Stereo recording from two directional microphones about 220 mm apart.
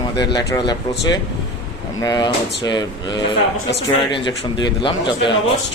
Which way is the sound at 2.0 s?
20° left (ahead or behind).